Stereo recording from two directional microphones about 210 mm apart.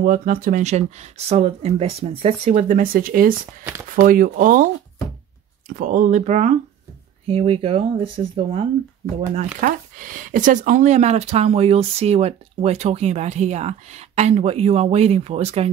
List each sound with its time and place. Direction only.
0.0 s speech: 40° right (ahead or behind)
5.7 s speech: 40° right (ahead or behind)